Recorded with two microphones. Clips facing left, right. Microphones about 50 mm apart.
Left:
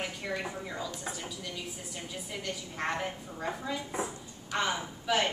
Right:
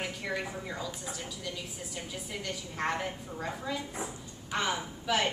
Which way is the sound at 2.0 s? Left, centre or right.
Centre.